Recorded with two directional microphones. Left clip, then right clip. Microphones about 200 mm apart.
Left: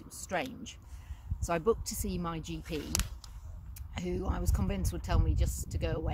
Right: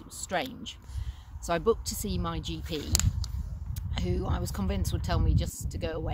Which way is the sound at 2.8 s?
25° left (ahead or behind).